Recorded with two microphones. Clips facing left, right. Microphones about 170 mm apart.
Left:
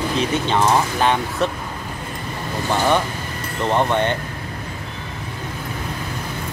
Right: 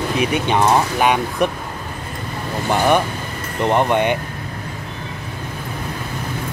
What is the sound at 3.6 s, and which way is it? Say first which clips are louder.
Speech: right 2 dB; 15° right (ahead or behind).